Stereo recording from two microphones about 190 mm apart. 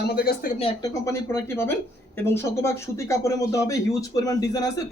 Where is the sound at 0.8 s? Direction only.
15° left (ahead or behind).